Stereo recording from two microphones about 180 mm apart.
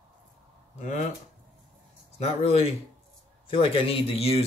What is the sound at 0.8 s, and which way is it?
Speech, 40° left (ahead or behind).